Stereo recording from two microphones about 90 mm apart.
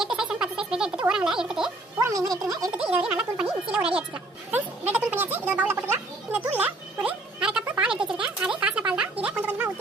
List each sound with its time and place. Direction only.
0.0 s a sound: 5° right (ahead or behind)
1.0 s speech: 5° right (ahead or behind)
2.0 s speech: 40° right (ahead or behind)
2.7 s speech: 10° right (ahead or behind)
7.3 s music: 10° right (ahead or behind)
7.8 s a sound: 10° right (ahead or behind)